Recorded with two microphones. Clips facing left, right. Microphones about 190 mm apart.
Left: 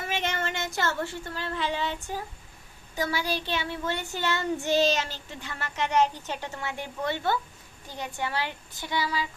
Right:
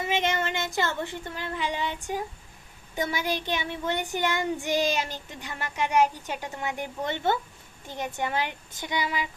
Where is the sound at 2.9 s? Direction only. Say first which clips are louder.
Right 1 dB; 20° right (ahead or behind).